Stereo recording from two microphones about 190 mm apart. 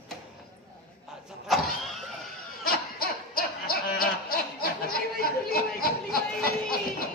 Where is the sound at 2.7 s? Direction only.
50° left (ahead or behind).